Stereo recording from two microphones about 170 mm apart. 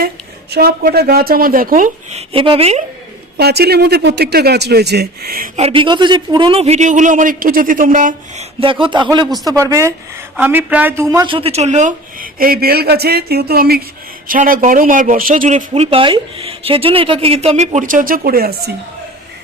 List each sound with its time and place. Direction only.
0.5 s speech: 65° right (ahead or behind); by 2.8 s 35° right (ahead or behind)
3.3 s speech: 70° right (ahead or behind)
5.5 s speech: 35° right (ahead or behind); by 8.4 s 50° right (ahead or behind)
8.6 s a man's voice: 30° right (ahead or behind)
11.3 s speech: 35° right (ahead or behind); by 18.7 s 60° right (ahead or behind)